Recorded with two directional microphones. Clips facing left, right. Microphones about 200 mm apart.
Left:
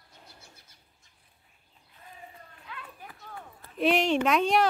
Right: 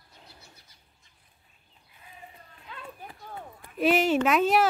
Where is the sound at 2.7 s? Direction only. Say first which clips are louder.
Right 3 dB; 25° right (ahead or behind).